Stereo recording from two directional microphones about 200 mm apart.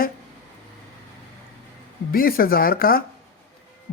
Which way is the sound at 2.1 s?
45° left (ahead or behind).